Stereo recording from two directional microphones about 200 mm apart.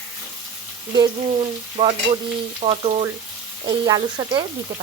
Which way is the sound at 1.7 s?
30° right (ahead or behind).